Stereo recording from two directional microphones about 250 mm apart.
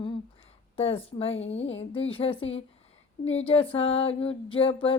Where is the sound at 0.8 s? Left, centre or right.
Left.